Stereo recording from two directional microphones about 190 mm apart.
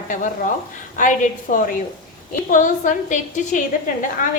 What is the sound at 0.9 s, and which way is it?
A woman's voice, 40° left (ahead or behind).